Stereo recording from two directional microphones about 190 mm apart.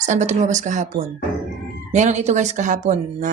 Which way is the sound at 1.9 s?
35° right (ahead or behind).